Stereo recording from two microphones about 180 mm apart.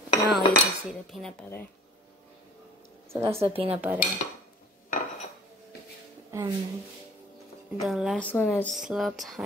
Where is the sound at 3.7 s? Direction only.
10° right (ahead or behind).